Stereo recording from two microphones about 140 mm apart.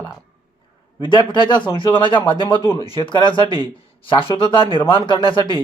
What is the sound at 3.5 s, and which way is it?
Speech, 30° right (ahead or behind).